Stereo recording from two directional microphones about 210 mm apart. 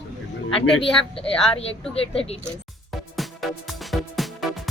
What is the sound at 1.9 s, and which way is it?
Speech, 25° left (ahead or behind).